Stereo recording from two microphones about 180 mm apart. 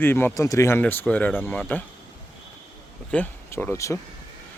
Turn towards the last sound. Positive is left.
turn(degrees=15)  # may be behind; listen again after turning